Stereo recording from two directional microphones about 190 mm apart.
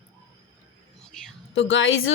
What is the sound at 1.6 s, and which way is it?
Speech, 90° left.